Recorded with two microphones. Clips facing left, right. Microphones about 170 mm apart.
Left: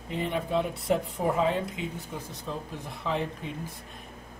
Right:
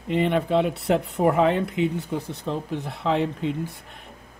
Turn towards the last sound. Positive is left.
turn(degrees=-80)